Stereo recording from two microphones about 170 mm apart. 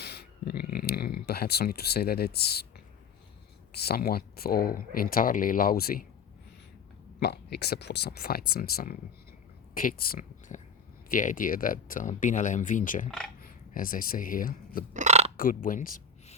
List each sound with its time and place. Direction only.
0.0 s a sound: 70° left (ahead or behind)
3.7 s speech: 65° left (ahead or behind)
7.2 s speech: 75° left (ahead or behind); by 13.1 s 50° left (ahead or behind)
13.1 s speech: 5° left (ahead or behind)
13.4 s speech: 55° left (ahead or behind)
14.9 s a sound: 40° right (ahead or behind)
15.4 s speech: 55° left (ahead or behind)